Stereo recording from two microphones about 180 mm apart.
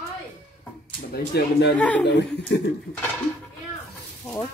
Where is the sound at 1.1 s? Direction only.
60° left (ahead or behind).